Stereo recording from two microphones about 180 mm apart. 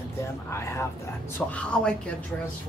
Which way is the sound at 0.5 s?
15° left (ahead or behind).